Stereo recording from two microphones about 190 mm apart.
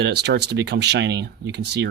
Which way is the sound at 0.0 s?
60° right (ahead or behind).